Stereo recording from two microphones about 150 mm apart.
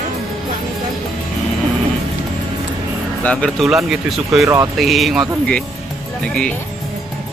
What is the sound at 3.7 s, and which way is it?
Speech, 5° right (ahead or behind).